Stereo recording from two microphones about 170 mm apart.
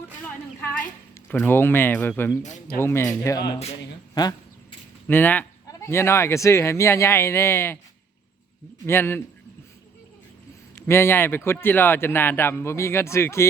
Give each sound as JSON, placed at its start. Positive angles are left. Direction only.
{"t": 1.3, "sound": "speech", "side_deg": 15}
{"t": 4.1, "sound": "speech", "side_deg": 20}
{"t": 5.0, "sound": "speech", "side_deg": 10}
{"t": 8.9, "sound": "speech", "side_deg": 15}
{"t": 10.8, "sound": "speech", "side_deg": 15}